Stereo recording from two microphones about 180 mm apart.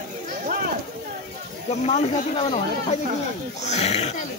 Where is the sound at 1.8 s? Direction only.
35° left (ahead or behind).